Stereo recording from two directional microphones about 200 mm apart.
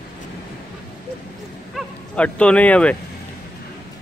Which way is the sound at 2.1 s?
5° left (ahead or behind).